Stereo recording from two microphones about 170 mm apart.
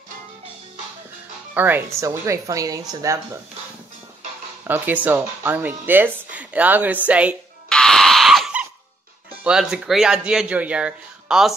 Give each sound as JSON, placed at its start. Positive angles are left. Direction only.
{"t": 1.5, "sound": "speech", "side_deg": -10}
{"t": 4.6, "sound": "speech", "side_deg": -10}
{"t": 7.7, "sound": "a sound", "side_deg": 5}
{"t": 9.3, "sound": "speech", "side_deg": -5}